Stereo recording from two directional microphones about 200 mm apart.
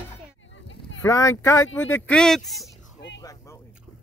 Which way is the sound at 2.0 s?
5° left (ahead or behind).